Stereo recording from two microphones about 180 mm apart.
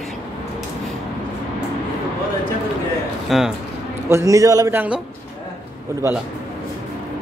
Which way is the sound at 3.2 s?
Centre (ahead or behind).